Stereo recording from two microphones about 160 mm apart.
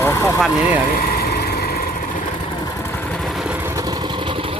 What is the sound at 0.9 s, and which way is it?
Vehicle, 65° left (ahead or behind).